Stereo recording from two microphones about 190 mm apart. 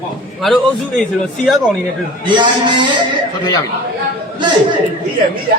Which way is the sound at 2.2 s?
25° right (ahead or behind).